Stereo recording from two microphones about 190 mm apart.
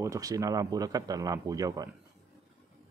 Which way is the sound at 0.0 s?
15° right (ahead or behind).